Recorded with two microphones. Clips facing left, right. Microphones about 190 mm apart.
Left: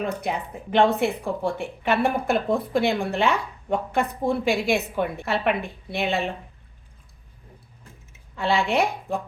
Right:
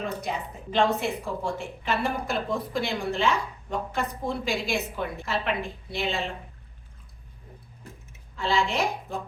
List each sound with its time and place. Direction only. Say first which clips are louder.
0.2 s a woman's voice: left 4 dB; 60° left (ahead or behind)
8.4 s a woman's voice: left 4 dB; 60° left (ahead or behind)